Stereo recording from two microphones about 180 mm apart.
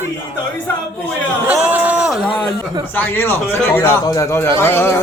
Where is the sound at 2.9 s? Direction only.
10° left (ahead or behind).